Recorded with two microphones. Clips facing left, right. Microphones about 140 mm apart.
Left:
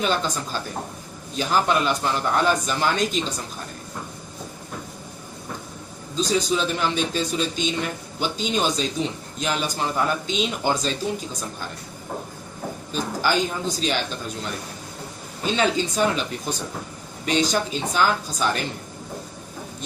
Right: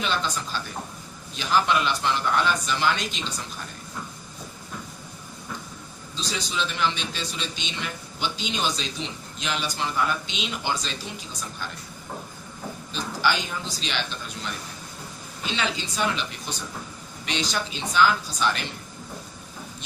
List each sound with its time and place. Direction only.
0.0 s a man's voice: 45° left (ahead or behind)
6.1 s a man's voice: 40° left (ahead or behind)
12.9 s a man's voice: 45° left (ahead or behind)
15.4 s a man's voice: 40° left (ahead or behind)